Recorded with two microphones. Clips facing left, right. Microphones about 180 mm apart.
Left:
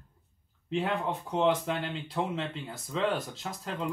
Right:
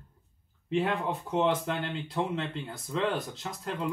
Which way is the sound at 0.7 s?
Centre (ahead or behind).